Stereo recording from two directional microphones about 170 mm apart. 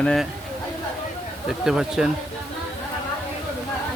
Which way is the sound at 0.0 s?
5° left (ahead or behind).